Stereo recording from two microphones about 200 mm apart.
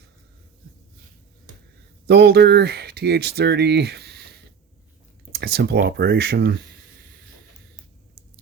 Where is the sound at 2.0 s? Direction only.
55° right (ahead or behind).